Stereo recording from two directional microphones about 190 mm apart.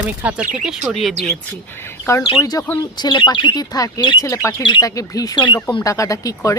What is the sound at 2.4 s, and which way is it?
Speech, 20° left (ahead or behind).